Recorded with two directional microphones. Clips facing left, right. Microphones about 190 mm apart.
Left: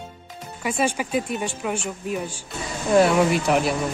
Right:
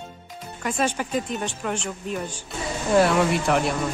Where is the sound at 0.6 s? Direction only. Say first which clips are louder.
Left 1 dB; 10° left (ahead or behind).